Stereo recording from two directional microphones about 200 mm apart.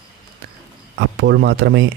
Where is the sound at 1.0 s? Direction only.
60° right (ahead or behind).